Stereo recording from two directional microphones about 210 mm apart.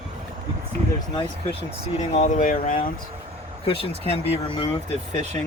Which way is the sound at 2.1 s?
35° left (ahead or behind).